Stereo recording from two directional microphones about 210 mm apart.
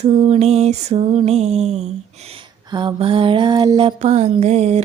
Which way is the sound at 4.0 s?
30° right (ahead or behind).